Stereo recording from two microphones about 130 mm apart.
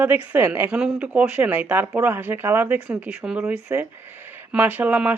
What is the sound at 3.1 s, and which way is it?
Speech, 5° right (ahead or behind).